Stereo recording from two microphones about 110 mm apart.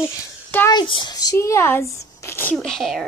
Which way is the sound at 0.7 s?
45° left (ahead or behind).